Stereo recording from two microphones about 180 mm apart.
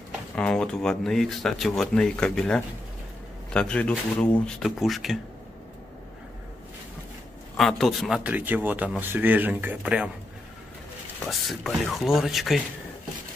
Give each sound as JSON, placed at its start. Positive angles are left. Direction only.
{"t": 0.4, "sound": "speech", "side_deg": 5}
{"t": 7.5, "sound": "speech", "side_deg": 0}
{"t": 11.2, "sound": "speech", "side_deg": 0}